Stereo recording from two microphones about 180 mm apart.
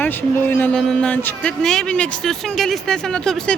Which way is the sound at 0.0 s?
10° left (ahead or behind).